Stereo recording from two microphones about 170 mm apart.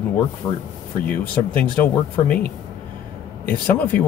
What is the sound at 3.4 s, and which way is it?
Speech, 10° left (ahead or behind).